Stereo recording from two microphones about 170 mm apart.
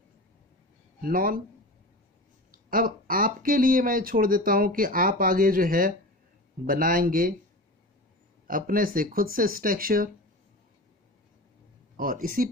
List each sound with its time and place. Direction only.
1.0 s speech: 55° right (ahead or behind)
2.5 s speech: 55° right (ahead or behind)
8.5 s speech: 55° right (ahead or behind)
12.0 s speech: 55° right (ahead or behind)